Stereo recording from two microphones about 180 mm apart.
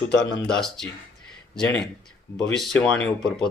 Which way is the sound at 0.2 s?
5° left (ahead or behind).